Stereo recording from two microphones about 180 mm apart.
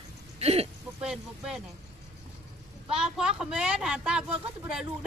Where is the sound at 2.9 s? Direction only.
5° right (ahead or behind).